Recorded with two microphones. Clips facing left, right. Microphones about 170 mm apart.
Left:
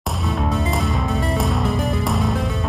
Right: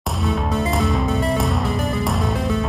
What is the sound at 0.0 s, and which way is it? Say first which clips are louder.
Music: right 1 dB; centre (ahead or behind).